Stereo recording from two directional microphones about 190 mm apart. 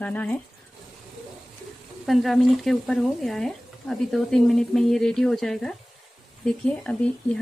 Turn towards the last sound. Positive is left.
turn(degrees=5)  # may be behind; listen again after turning